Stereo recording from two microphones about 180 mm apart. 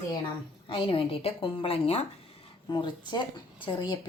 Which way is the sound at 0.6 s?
30° left (ahead or behind).